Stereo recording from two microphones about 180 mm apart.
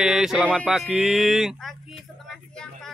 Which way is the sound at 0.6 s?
Centre (ahead or behind).